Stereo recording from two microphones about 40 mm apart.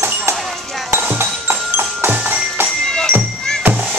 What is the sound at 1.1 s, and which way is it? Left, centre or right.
Music, right.